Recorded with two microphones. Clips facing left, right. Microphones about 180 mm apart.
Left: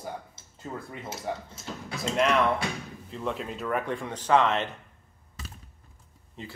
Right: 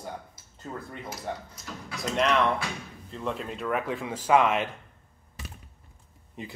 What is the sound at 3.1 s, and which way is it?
Speech, centre (ahead or behind).